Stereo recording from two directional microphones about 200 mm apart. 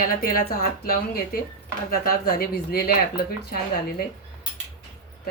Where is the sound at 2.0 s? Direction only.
50° left (ahead or behind).